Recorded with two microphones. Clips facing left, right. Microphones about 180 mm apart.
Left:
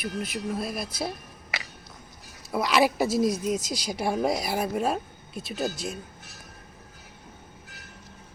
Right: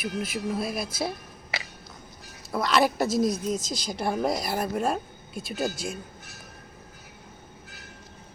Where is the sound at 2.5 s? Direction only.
10° left (ahead or behind).